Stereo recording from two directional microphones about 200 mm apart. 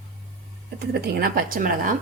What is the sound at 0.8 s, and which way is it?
A woman's voice, 55° right (ahead or behind).